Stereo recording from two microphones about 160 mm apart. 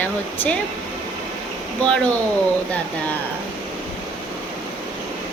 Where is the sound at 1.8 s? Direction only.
5° left (ahead or behind).